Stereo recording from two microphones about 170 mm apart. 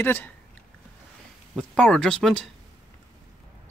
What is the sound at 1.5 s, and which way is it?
Speech, 5° left (ahead or behind).